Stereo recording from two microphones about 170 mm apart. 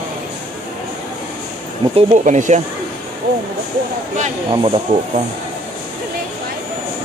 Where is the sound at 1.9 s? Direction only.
45° right (ahead or behind).